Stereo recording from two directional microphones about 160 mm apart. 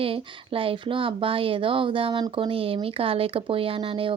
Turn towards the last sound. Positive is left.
turn(degrees=-35)  # may be behind; listen again after turning